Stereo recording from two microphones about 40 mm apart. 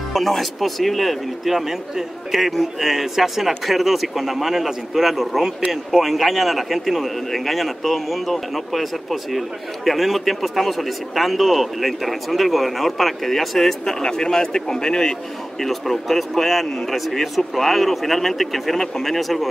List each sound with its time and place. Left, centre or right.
0.1 s a man's voice: centre
15.6 s a man's voice: centre